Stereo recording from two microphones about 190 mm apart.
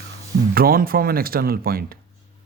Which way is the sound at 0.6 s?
50° right (ahead or behind).